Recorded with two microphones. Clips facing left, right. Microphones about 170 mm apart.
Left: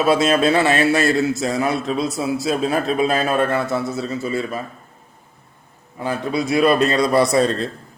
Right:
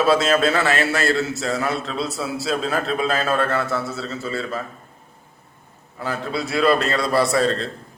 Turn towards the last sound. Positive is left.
turn(degrees=20)  # may be behind; listen again after turning